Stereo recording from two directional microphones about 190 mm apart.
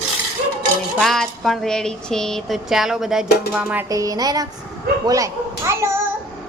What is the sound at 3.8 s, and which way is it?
A woman's voice, 20° right (ahead or behind).